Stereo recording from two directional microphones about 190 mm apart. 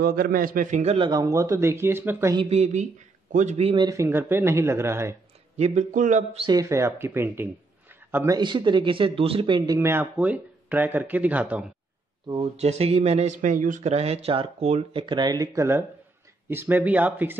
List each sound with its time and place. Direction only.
0.0 s a man's voice: 50° right (ahead or behind); by 2.3 s 10° right (ahead or behind)
2.3 s speech: 35° right (ahead or behind); by 5.1 s 15° right (ahead or behind)
5.6 s speech: 40° right (ahead or behind)
6.4 s speech: 20° right (ahead or behind)
8.4 s speech: 25° right (ahead or behind); by 11.6 s 10° right (ahead or behind)
12.3 s speech: 30° right (ahead or behind); by 17.4 s 10° right (ahead or behind)